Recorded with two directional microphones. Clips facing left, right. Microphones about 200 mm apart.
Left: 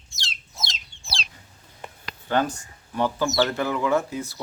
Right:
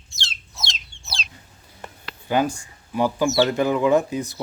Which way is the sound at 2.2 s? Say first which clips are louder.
Right 2 dB; 10° right (ahead or behind).